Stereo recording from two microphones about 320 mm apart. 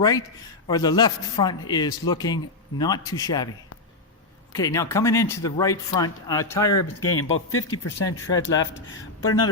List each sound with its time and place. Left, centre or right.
0.7 s a man's voice: centre
4.5 s a man's voice: centre
6.7 s speech: left
8.0 s a man's voice: centre